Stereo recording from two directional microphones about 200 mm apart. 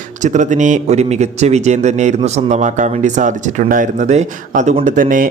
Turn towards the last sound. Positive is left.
turn(degrees=-40)  # may be behind; listen again after turning